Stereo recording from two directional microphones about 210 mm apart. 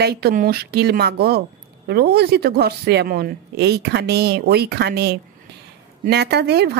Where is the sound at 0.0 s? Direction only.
50° right (ahead or behind).